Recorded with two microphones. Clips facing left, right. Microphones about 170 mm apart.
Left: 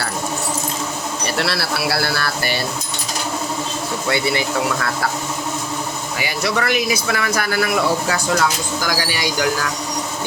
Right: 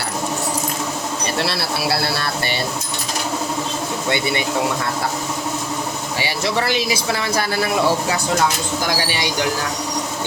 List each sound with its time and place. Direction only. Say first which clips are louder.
1.4 s speech: left 1 dB; 25° right (ahead or behind)
4.1 s speech: left 2 dB; 25° right (ahead or behind)
6.1 s speech: even; 30° right (ahead or behind)